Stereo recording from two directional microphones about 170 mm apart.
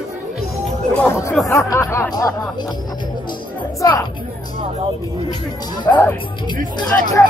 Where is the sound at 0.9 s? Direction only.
15° left (ahead or behind).